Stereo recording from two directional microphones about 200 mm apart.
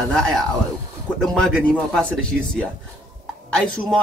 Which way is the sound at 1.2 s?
5° left (ahead or behind).